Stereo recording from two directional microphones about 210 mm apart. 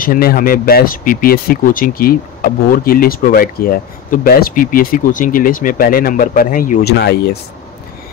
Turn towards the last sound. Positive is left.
turn(degrees=50)  # may be behind; listen again after turning